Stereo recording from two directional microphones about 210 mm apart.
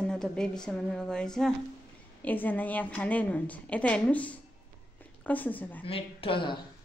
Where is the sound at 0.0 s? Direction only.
5° left (ahead or behind).